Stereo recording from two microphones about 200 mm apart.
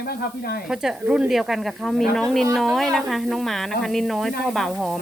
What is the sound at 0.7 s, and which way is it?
Speech, 5° right (ahead or behind).